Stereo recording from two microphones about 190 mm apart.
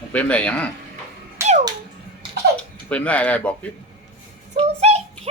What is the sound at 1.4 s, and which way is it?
Music, 15° right (ahead or behind).